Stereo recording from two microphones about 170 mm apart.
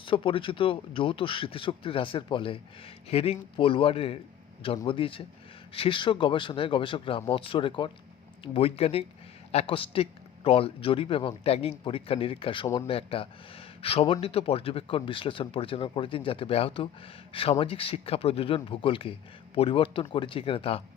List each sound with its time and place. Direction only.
0.0 s speech: 30° left (ahead or behind)